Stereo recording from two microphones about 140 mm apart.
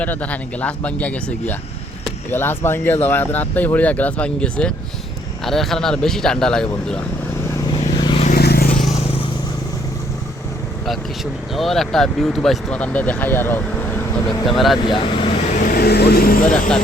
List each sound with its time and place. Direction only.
0.0 s speech: 10° left (ahead or behind)
7.5 s vehicle: 30° left (ahead or behind)
8.2 s vehicle: 80° left
11.5 s speech: centre (ahead or behind)
14.4 s speech: centre (ahead or behind)
14.8 s speech: 35° left (ahead or behind)
15.5 s speech: 80° left